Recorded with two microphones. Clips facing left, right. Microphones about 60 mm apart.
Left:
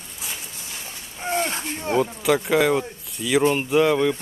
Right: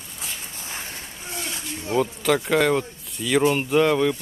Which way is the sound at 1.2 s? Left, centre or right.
Left.